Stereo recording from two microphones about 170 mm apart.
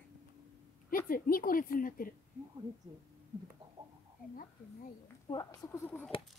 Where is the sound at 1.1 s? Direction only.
55° left (ahead or behind).